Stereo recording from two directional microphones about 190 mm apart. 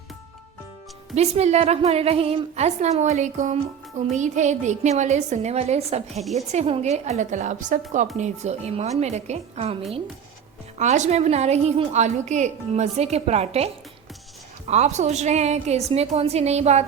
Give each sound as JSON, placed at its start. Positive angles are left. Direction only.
{"t": 1.1, "sound": "a woman's voice", "side_deg": -35}
{"t": 10.8, "sound": "a woman's voice", "side_deg": -40}
{"t": 14.7, "sound": "a woman's voice", "side_deg": -35}